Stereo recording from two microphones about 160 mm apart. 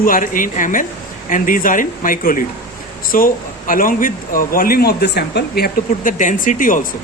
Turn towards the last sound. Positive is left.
turn(degrees=55)  # may be behind; listen again after turning